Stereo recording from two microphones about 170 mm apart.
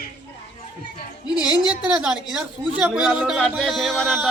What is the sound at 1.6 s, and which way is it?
Speech, 5° right (ahead or behind).